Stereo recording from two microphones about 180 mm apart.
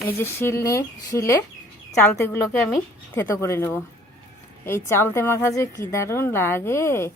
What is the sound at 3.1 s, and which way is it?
A woman's voice, 15° left (ahead or behind).